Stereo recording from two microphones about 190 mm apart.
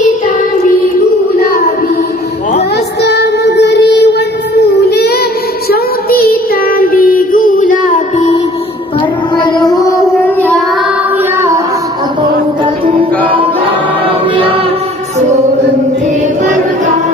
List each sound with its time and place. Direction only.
3.0 s child singing: 60° left (ahead or behind); by 8.3 s 45° left (ahead or behind)
9.3 s child singing: 25° left (ahead or behind)